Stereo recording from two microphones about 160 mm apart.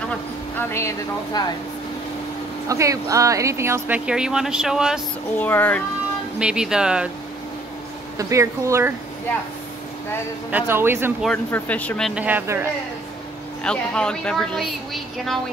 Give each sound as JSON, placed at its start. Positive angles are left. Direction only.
{"t": 0.6, "sound": "a woman's voice", "side_deg": 15}
{"t": 2.7, "sound": "speech", "side_deg": -20}
{"t": 5.4, "sound": "a woman's voice", "side_deg": 10}
{"t": 6.4, "sound": "a woman's voice", "side_deg": -5}
{"t": 8.2, "sound": "speech", "side_deg": -20}
{"t": 10.5, "sound": "speech", "side_deg": -15}
{"t": 11.5, "sound": "a woman's voice", "side_deg": 10}
{"t": 12.2, "sound": "speech", "side_deg": -10}
{"t": 13.7, "sound": "a woman's voice", "side_deg": 5}